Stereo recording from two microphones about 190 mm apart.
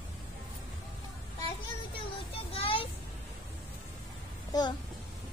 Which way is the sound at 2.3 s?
30° left (ahead or behind).